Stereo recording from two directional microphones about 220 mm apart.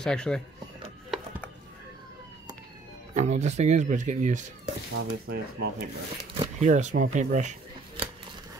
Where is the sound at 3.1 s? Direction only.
30° right (ahead or behind).